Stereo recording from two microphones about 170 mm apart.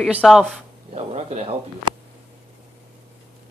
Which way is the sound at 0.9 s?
40° right (ahead or behind).